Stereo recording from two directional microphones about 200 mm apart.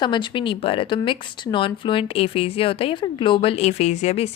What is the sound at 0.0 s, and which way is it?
Speech, 25° left (ahead or behind).